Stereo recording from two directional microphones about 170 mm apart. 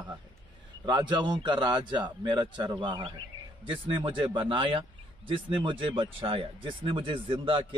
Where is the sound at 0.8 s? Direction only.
25° right (ahead or behind).